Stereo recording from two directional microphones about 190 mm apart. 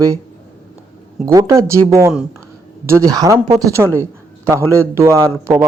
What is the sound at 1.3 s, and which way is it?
A man's voice, 15° right (ahead or behind).